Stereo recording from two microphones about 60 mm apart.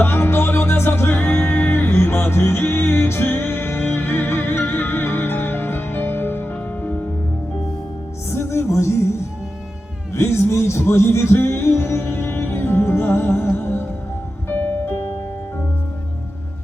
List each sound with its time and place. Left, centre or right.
0.0 s music: left
8.3 s music: left
14.5 s music: left